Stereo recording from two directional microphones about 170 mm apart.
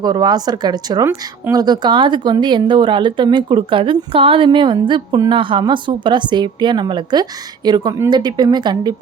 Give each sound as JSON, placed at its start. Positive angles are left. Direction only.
{"t": 0.0, "sound": "speech", "side_deg": -25}